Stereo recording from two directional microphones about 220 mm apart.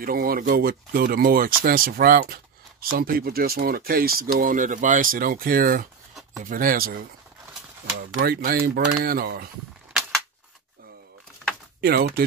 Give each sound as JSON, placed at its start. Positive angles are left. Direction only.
{"t": 0.0, "sound": "speech", "side_deg": -40}
{"t": 8.2, "sound": "speech", "side_deg": -40}
{"t": 11.8, "sound": "speech", "side_deg": -45}